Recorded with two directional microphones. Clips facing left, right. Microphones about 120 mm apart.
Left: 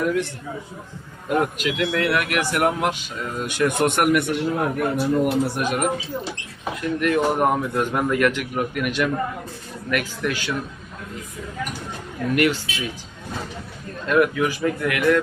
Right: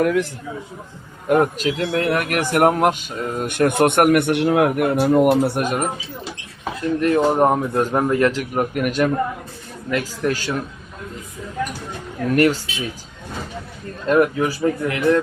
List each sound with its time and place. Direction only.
1.3 s a man's voice: 40° right (ahead or behind)
12.3 s a man's voice: 40° right (ahead or behind)
14.1 s a man's voice: 35° right (ahead or behind)